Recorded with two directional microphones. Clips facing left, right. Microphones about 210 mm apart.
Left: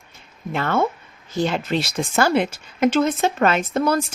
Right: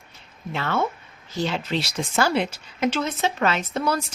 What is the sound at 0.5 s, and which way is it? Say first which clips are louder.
Speech: left 4 dB; 50° left (ahead or behind).